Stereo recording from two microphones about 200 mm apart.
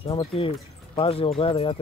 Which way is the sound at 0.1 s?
25° left (ahead or behind).